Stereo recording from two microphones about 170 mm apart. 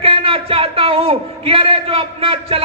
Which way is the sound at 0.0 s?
35° right (ahead or behind).